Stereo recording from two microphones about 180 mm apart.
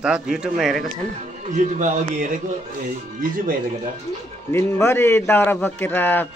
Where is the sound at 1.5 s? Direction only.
45° right (ahead or behind).